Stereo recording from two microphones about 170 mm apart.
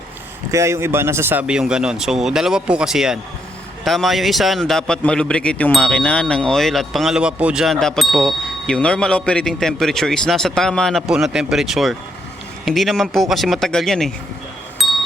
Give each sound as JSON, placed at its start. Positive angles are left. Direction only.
{"t": 0.5, "sound": "a man's voice", "side_deg": -15}
{"t": 14.8, "sound": "wind chime", "side_deg": 0}